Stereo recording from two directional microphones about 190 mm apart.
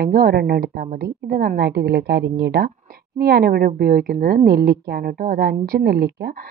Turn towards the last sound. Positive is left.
turn(degrees=-55)  # may be behind; listen again after turning